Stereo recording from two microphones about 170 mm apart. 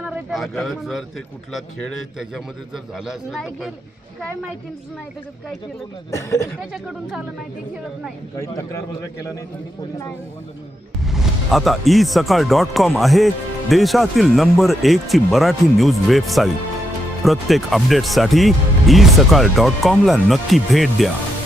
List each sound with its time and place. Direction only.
0.0 s a sound: centre (ahead or behind)
0.6 s speech: centre (ahead or behind)
2.1 s speech: centre (ahead or behind)
6.1 s speech: 15° left (ahead or behind)
8.4 s a man's voice: 20° left (ahead or behind)
11.0 s speech: centre (ahead or behind)